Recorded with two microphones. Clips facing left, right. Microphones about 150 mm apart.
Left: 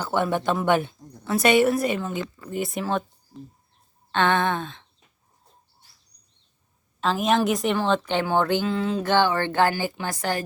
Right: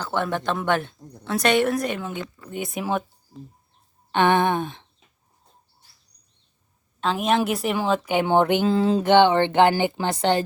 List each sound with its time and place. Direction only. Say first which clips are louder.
0.0 s a woman's voice: left 2 dB; 10° left (ahead or behind)
4.1 s a sound: right 3 dB; 15° right (ahead or behind)
7.0 s a woman's voice: even; centre (ahead or behind)
8.2 s speech: right 3 dB; 20° right (ahead or behind)
8.6 s a sound: right 5 dB; 35° right (ahead or behind)
9.0 s speech: right 5 dB; 20° right (ahead or behind)